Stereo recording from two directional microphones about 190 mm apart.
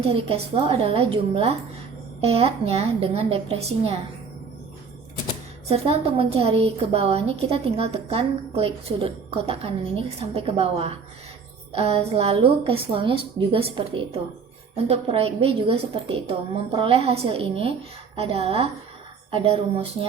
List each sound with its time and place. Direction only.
0.0 s a woman's voice: 30° right (ahead or behind)
5.6 s a woman's voice: 30° right (ahead or behind)